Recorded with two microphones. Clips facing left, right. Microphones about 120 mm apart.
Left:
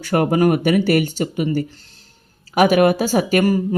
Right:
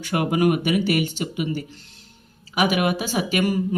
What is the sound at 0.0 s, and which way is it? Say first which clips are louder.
Speech: left 4 dB; 40° left (ahead or behind).